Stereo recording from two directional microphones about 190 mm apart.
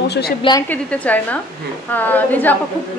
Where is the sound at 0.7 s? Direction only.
10° left (ahead or behind).